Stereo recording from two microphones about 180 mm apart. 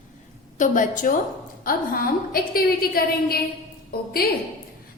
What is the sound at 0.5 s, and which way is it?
A woman's voice, 45° left (ahead or behind).